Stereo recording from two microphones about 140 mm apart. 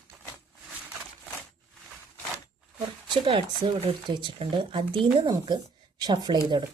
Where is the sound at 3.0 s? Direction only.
35° right (ahead or behind).